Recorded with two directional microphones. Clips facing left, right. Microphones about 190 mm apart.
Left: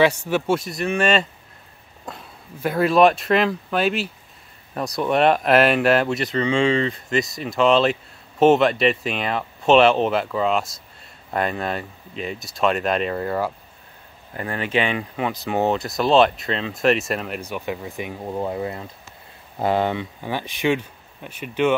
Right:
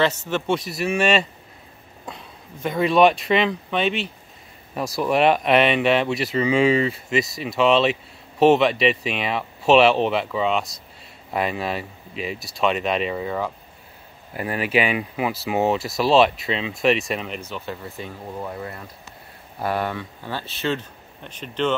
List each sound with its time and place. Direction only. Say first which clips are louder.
0.0 s speech: left 3 dB; 10° left (ahead or behind)
14.3 s speech: right 1 dB; 15° right (ahead or behind)
17.4 s speech: left 4 dB; 15° left (ahead or behind)